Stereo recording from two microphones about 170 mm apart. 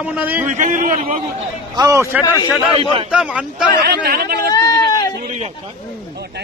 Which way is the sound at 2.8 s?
30° right (ahead or behind).